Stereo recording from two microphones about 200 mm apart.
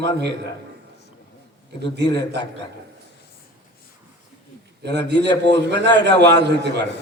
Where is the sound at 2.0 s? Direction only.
20° left (ahead or behind).